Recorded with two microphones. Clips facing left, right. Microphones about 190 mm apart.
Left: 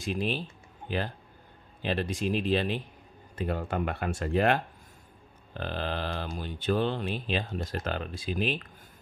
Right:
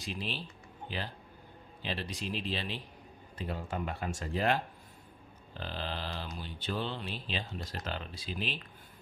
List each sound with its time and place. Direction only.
0.0 s speech: 50° left (ahead or behind)